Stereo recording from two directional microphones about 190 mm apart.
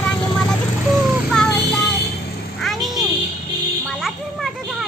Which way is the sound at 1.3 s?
5° left (ahead or behind).